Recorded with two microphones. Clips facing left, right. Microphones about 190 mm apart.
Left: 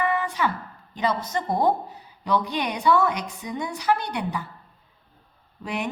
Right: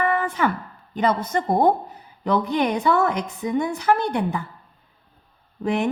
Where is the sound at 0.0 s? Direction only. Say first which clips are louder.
Right 3 dB; 55° right (ahead or behind).